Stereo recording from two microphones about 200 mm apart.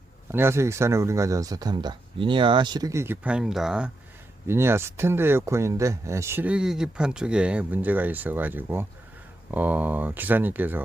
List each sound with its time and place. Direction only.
0.3 s speech: 10° right (ahead or behind)